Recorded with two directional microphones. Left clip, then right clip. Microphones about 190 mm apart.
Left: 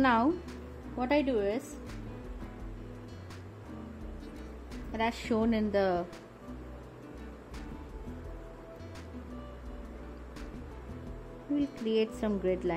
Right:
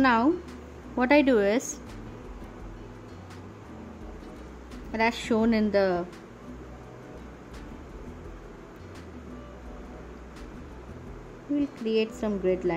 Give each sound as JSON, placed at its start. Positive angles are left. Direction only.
{"t": 0.0, "sound": "speech", "side_deg": 5}
{"t": 0.9, "sound": "speech", "side_deg": -20}
{"t": 4.9, "sound": "speech", "side_deg": 0}
{"t": 11.5, "sound": "speech", "side_deg": 5}